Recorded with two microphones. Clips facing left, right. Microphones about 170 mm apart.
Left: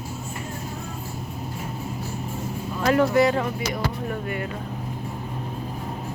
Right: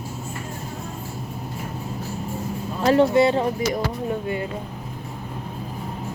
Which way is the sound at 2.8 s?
30° right (ahead or behind).